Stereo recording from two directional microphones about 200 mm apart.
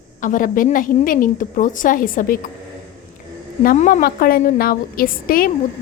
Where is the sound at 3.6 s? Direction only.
40° left (ahead or behind).